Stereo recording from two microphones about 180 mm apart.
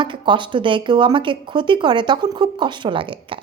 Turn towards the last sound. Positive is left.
turn(degrees=-30)  # may be behind; listen again after turning